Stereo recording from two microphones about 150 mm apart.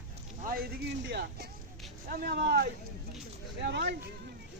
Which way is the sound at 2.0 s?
90° right.